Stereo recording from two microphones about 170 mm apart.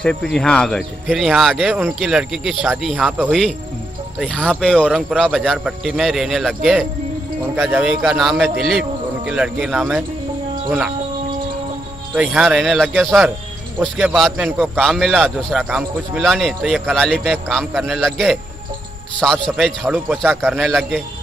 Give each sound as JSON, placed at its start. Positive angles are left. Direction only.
{"t": 0.0, "sound": "a man's voice", "side_deg": 5}
{"t": 4.2, "sound": "a man's voice", "side_deg": 5}
{"t": 12.2, "sound": "a man's voice", "side_deg": 0}